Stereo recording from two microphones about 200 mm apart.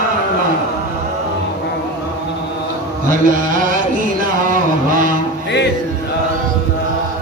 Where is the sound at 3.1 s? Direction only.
40° right (ahead or behind).